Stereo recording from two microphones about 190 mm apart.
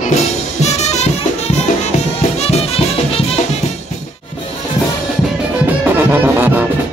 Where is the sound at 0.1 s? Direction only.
35° left (ahead or behind).